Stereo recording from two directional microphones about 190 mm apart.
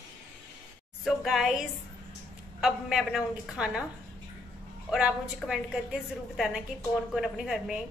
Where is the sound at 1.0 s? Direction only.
Centre (ahead or behind).